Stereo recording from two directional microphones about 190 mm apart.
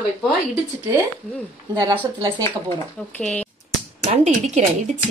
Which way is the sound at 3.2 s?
5° left (ahead or behind).